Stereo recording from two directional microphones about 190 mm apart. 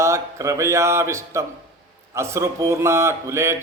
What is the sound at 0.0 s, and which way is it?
A man's voice, 15° right (ahead or behind).